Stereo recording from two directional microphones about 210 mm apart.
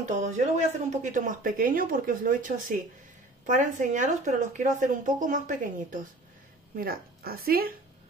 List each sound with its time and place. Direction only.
0.2 s a woman's voice: 35° right (ahead or behind)